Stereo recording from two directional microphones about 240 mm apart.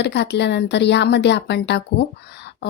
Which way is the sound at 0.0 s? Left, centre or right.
Left.